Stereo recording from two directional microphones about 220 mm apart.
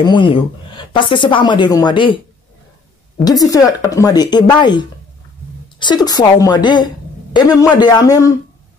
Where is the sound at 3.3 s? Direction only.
15° left (ahead or behind).